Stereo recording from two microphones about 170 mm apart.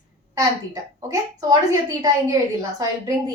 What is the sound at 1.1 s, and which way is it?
A woman's voice, 20° right (ahead or behind).